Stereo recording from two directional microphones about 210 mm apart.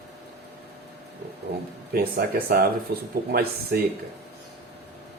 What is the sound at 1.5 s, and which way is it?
Speech, 50° right (ahead or behind).